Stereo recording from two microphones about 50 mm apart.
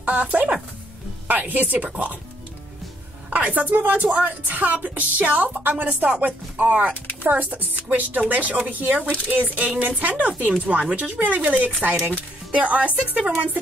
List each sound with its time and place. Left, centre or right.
0.0 s speech: right
3.3 s speech: right